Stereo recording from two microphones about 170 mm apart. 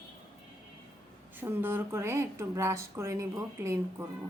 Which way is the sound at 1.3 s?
10° right (ahead or behind).